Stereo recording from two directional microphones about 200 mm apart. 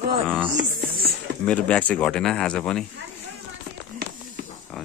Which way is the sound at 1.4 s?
5° left (ahead or behind).